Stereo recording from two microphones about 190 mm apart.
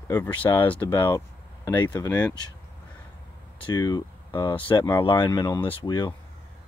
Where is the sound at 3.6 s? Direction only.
20° left (ahead or behind).